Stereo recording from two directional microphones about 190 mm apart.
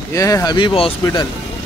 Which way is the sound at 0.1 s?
15° left (ahead or behind).